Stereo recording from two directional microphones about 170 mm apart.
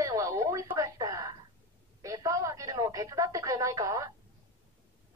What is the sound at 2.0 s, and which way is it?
Radio, 20° right (ahead or behind).